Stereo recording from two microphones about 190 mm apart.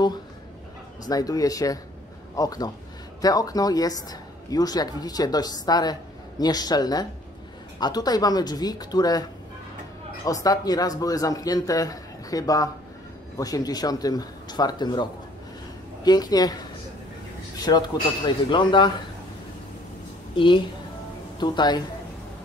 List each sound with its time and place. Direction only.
1.0 s speech: 20° left (ahead or behind)
10.2 s speech: 20° left (ahead or behind)
17.6 s speech: 20° left (ahead or behind)
20.3 s speech: 25° left (ahead or behind)